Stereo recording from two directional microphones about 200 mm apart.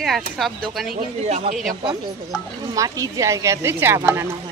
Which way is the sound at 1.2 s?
35° right (ahead or behind).